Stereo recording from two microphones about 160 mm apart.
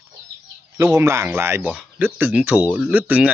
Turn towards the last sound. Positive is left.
turn(degrees=-10)  # may be behind; listen again after turning